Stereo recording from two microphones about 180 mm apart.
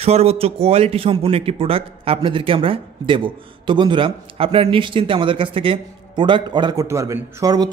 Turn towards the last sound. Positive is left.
turn(degrees=-20)  # may be behind; listen again after turning